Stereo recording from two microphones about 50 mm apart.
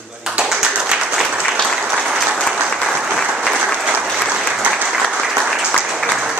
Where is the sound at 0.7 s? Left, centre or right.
Centre.